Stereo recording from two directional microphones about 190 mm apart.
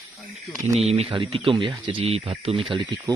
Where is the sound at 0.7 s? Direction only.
35° right (ahead or behind).